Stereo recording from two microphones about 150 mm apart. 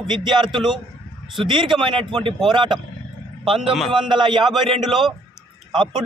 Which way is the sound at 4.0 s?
30° right (ahead or behind).